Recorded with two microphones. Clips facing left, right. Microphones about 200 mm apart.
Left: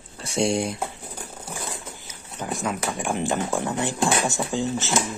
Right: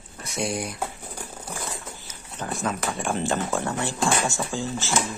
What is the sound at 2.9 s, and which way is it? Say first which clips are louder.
Speech: left 1 dB; 15° left (ahead or behind).